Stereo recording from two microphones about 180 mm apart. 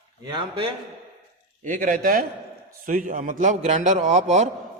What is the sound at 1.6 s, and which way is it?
A man's voice, 50° right (ahead or behind).